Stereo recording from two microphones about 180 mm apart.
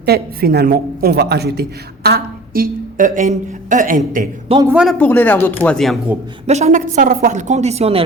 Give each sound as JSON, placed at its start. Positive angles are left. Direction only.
{"t": 0.0, "sound": "a woman's voice", "side_deg": -60}
{"t": 4.6, "sound": "a man's voice", "side_deg": -5}
{"t": 4.9, "sound": "speech", "side_deg": 10}
{"t": 6.5, "sound": "a woman's voice", "side_deg": -40}